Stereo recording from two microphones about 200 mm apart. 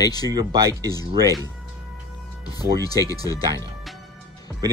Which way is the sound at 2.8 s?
20° left (ahead or behind).